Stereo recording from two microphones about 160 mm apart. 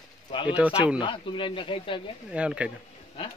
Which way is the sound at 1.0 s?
30° left (ahead or behind).